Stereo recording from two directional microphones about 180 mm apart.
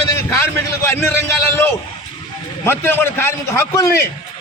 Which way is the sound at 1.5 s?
10° left (ahead or behind).